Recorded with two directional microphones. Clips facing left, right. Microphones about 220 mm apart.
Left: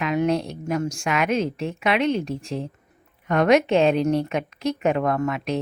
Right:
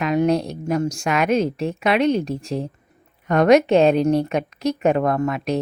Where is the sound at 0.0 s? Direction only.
40° right (ahead or behind).